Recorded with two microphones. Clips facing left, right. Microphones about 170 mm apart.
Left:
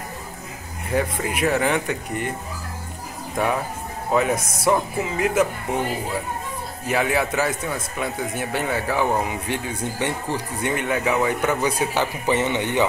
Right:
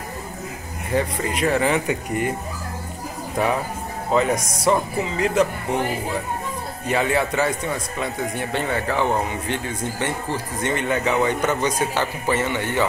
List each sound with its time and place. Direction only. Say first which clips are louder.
0.9 s speech: right 1 dB; 5° left (ahead or behind)
4.1 s speech: right 1 dB; 5° left (ahead or behind)
4.4 s speech: right 1 dB; 25° left (ahead or behind)
4.6 s speech: right 1 dB; 5° left (ahead or behind)
6.9 s speech: right 1 dB; centre (ahead or behind); by 12.8 s 20° left (ahead or behind)